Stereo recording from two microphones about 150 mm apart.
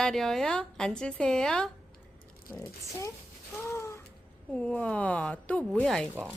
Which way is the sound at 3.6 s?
20° left (ahead or behind).